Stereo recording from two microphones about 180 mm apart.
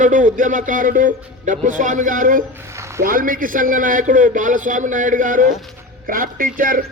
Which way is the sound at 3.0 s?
50° right (ahead or behind).